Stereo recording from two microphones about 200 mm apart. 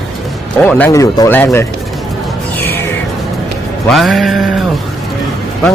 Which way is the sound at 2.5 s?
10° left (ahead or behind).